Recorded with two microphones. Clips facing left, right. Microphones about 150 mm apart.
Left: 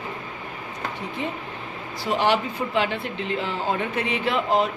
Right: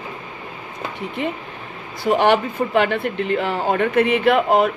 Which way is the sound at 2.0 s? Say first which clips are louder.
Right 6 dB; 55° right (ahead or behind).